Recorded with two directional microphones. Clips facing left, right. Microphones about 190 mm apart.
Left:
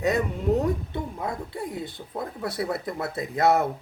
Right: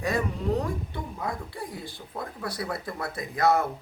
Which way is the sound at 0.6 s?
25° left (ahead or behind).